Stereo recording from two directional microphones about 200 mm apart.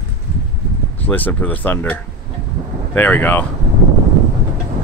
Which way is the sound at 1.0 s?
10° left (ahead or behind).